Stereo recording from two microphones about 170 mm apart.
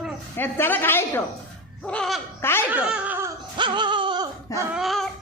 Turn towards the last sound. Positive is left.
turn(degrees=0)  # may be behind; listen again after turning